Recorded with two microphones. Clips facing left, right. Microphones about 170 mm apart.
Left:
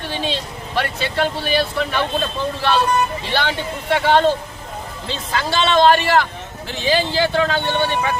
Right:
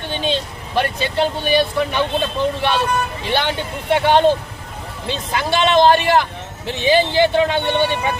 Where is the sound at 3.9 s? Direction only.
15° right (ahead or behind).